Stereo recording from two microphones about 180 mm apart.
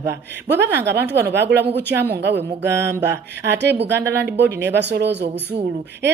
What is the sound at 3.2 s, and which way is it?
Speech, 70° right (ahead or behind).